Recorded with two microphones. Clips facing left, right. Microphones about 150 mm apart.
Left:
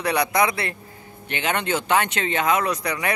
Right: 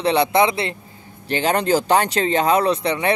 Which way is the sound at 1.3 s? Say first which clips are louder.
Right 6 dB; 35° right (ahead or behind).